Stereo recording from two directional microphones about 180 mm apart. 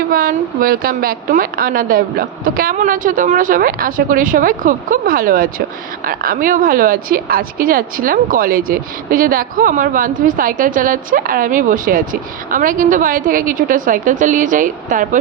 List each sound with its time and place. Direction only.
0.1 s speech: 50° right (ahead or behind)